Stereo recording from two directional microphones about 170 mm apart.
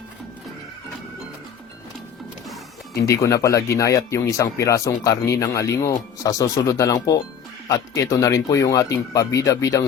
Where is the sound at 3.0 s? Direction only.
20° left (ahead or behind).